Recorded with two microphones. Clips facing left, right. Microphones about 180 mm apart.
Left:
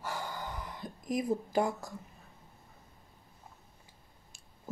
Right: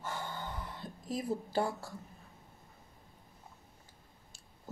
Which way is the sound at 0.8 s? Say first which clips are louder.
Left 4 dB; 15° left (ahead or behind).